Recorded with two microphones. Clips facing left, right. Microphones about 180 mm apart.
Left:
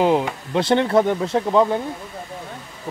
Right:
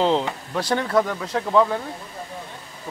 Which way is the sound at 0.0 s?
10° left (ahead or behind).